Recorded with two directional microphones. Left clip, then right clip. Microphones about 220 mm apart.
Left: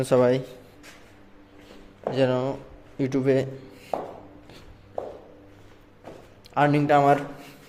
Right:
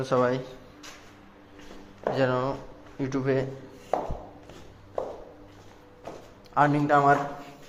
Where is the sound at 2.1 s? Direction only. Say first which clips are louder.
Left 3 dB; 35° left (ahead or behind).